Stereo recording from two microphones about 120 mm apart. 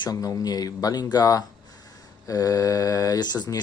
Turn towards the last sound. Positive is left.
turn(degrees=35)  # may be behind; listen again after turning